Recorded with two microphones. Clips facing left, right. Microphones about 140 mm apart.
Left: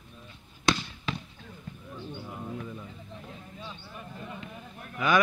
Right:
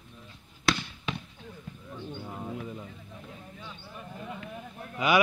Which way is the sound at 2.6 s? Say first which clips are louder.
Right 1 dB; 20° right (ahead or behind).